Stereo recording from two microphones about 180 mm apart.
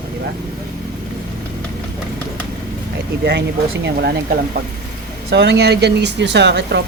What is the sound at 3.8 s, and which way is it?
Speech, 65° right (ahead or behind).